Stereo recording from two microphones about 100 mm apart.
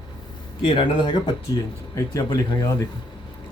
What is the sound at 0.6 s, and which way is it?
Speech, 55° left (ahead or behind).